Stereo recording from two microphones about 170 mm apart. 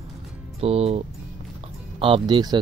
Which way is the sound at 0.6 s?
35° right (ahead or behind).